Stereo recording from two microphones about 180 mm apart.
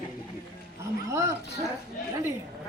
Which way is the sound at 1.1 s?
15° right (ahead or behind).